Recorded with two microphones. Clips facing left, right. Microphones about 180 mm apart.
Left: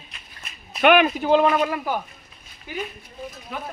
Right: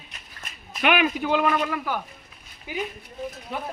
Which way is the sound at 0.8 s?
45° left (ahead or behind).